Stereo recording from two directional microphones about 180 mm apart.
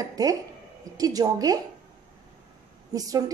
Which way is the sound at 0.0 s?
20° right (ahead or behind).